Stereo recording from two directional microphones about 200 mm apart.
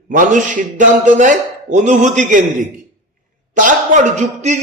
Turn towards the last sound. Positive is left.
turn(degrees=-35)  # may be behind; listen again after turning